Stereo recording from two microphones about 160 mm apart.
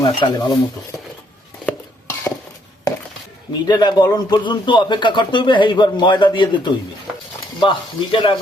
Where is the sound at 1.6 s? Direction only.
15° left (ahead or behind).